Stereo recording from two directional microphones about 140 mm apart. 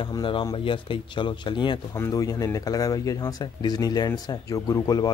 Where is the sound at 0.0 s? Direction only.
35° left (ahead or behind).